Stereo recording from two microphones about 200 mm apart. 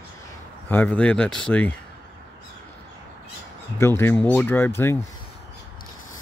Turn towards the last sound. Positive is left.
turn(degrees=10)  # may be behind; listen again after turning